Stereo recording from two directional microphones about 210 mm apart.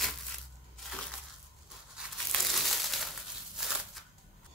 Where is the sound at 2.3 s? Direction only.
Centre (ahead or behind).